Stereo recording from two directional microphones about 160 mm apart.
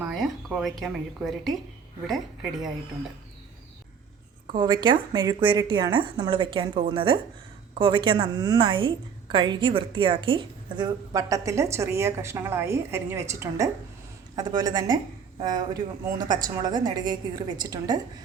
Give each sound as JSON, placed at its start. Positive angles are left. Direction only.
{"t": 0.0, "sound": "speech", "side_deg": 0}
{"t": 4.5, "sound": "a woman's voice", "side_deg": -30}